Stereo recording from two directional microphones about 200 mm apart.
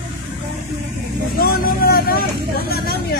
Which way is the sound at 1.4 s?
50° left (ahead or behind).